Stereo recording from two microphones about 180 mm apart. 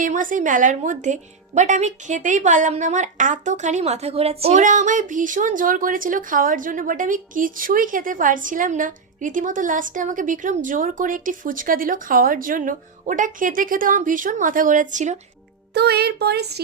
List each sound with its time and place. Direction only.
0.0 s a woman's voice: 50° right (ahead or behind)
15.7 s speech: 65° right (ahead or behind)